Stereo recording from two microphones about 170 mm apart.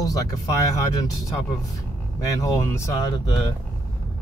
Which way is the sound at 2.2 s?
20° left (ahead or behind).